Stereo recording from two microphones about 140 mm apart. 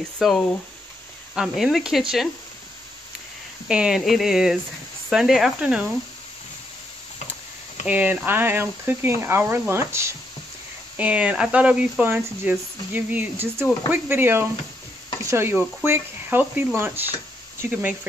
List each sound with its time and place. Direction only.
0.2 s speech: centre (ahead or behind)
3.6 s speech: 5° right (ahead or behind)
7.8 s speech: 10° right (ahead or behind)